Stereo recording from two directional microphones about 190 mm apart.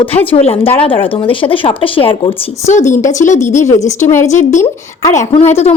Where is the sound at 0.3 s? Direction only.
30° left (ahead or behind).